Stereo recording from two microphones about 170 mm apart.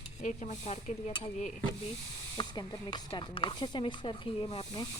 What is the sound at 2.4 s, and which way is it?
Speech, 25° left (ahead or behind).